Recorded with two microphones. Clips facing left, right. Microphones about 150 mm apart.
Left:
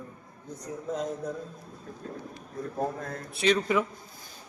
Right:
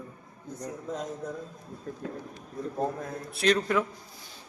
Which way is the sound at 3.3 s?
Centre (ahead or behind).